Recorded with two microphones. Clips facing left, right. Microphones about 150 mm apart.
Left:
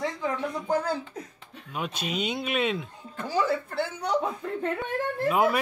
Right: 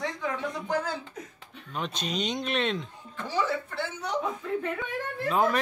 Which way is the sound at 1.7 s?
10° left (ahead or behind).